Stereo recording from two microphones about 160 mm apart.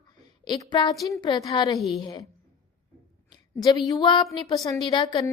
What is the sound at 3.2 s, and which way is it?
A woman's voice, 25° left (ahead or behind).